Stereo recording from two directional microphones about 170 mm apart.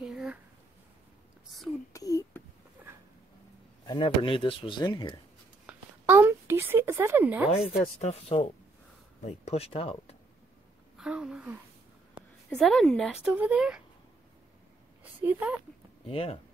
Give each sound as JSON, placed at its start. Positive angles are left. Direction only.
{"t": 0.0, "sound": "a sound", "side_deg": -5}
{"t": 1.9, "sound": "whispering", "side_deg": 20}
{"t": 3.8, "sound": "speech", "side_deg": 30}
{"t": 5.7, "sound": "a sound", "side_deg": -10}
{"t": 8.0, "sound": "speech", "side_deg": 40}
{"t": 11.0, "sound": "a woman's voice", "side_deg": -5}
{"t": 15.2, "sound": "speech", "side_deg": -10}
{"t": 16.1, "sound": "speech", "side_deg": 35}